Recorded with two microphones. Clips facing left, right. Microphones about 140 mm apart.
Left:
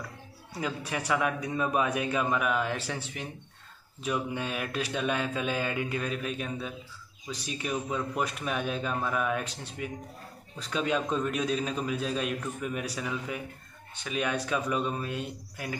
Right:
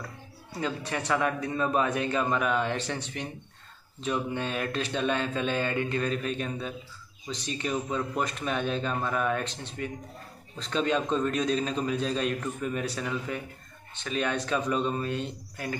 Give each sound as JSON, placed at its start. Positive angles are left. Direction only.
{"t": 0.6, "sound": "a man's voice", "side_deg": 10}